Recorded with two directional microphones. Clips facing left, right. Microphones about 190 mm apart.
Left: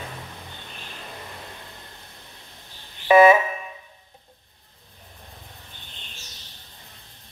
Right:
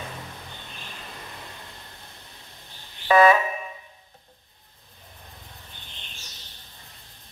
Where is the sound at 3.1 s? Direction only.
20° left (ahead or behind).